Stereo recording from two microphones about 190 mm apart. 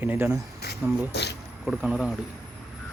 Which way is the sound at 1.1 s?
60° left (ahead or behind).